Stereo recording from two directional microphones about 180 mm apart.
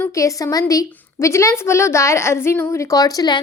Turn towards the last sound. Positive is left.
turn(degrees=20)  # may be behind; listen again after turning